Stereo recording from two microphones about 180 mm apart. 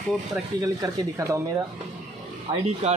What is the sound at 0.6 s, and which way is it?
Speech, 15° right (ahead or behind).